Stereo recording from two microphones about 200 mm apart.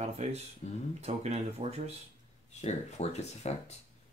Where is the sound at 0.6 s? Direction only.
35° left (ahead or behind).